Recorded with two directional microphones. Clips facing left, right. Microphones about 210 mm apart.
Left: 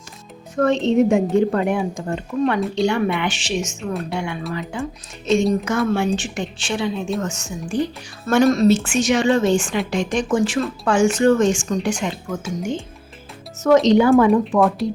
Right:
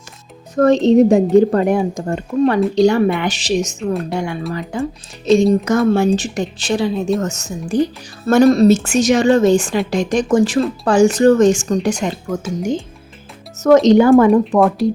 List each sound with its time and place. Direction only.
0.5 s speech: 40° right (ahead or behind)
13.6 s speech: 45° right (ahead or behind)